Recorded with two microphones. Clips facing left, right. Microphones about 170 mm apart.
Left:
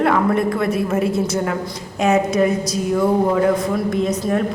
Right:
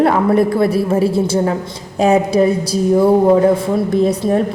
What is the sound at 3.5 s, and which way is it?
Speech, 35° right (ahead or behind).